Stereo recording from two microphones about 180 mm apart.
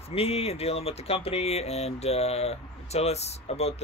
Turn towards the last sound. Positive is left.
turn(degrees=35)  # may be behind; listen again after turning